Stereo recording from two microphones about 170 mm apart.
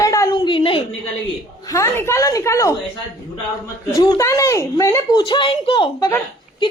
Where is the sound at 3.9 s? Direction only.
20° left (ahead or behind).